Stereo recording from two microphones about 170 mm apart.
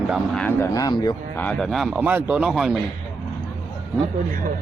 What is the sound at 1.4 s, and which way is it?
Speech, 5° left (ahead or behind).